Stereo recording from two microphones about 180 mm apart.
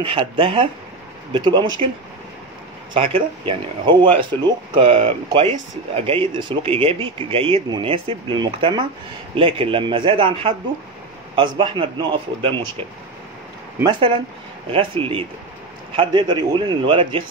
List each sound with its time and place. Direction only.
0.0 s speech: 30° right (ahead or behind)
2.9 s speech: 30° right (ahead or behind)
13.8 s speech: 30° right (ahead or behind)